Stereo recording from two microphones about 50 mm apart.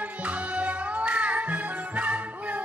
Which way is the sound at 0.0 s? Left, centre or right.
Right.